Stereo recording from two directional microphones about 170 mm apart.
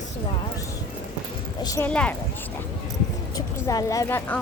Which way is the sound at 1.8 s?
10° left (ahead or behind).